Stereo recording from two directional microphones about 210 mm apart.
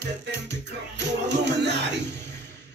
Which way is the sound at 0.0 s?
55° right (ahead or behind).